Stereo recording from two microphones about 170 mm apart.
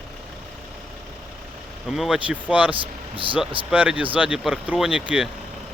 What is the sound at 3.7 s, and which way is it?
Speech, 5° right (ahead or behind).